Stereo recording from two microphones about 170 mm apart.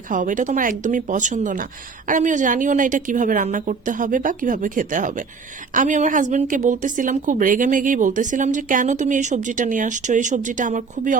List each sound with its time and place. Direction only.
0.1 s a woman's voice: 50° right (ahead or behind)